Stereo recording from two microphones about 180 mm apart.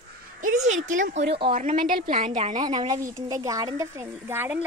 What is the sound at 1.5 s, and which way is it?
Speech, 50° right (ahead or behind).